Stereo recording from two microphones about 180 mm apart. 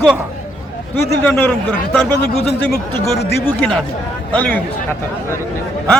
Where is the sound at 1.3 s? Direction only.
10° left (ahead or behind).